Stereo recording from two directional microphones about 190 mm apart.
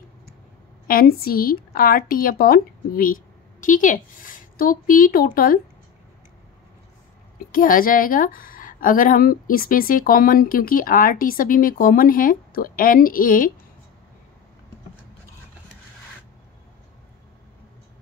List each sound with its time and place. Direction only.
0.8 s a woman's voice: 50° left (ahead or behind)
7.5 s a woman's voice: 50° left (ahead or behind)